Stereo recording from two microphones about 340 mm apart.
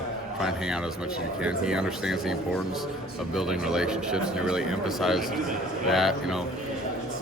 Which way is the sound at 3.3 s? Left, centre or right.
Centre.